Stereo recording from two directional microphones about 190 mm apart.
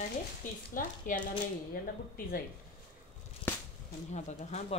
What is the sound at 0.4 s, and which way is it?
Speech, 45° left (ahead or behind).